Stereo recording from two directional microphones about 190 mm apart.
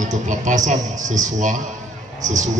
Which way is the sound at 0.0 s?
40° right (ahead or behind).